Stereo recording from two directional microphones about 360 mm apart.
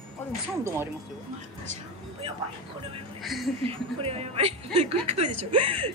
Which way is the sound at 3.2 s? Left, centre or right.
Centre.